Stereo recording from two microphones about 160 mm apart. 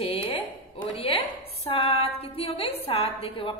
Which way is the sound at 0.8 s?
35° left (ahead or behind).